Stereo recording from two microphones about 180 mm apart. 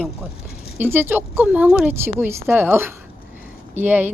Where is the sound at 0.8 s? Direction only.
10° right (ahead or behind).